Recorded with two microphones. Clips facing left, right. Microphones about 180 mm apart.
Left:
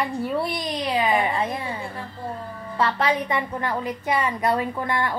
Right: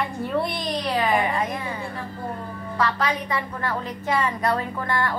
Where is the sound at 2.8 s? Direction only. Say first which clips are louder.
Left 2 dB; 25° left (ahead or behind).